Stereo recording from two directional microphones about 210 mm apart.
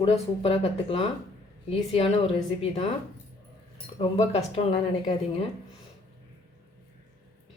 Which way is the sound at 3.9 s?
30° left (ahead or behind).